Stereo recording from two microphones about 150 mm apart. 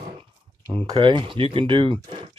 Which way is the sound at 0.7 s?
25° right (ahead or behind).